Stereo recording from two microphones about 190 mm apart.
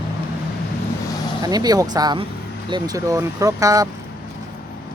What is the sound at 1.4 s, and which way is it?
Speech, 20° right (ahead or behind).